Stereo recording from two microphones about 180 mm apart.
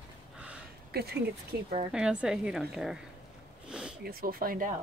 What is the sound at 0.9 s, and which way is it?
Speech, 60° right (ahead or behind).